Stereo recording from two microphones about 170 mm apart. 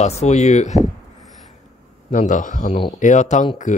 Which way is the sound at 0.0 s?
40° left (ahead or behind).